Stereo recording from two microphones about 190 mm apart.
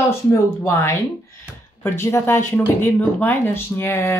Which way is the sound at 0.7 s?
15° left (ahead or behind).